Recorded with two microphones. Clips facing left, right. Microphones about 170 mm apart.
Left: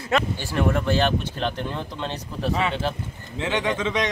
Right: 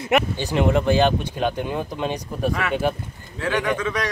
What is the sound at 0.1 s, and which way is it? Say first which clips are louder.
Speech: right 3 dB; 20° right (ahead or behind).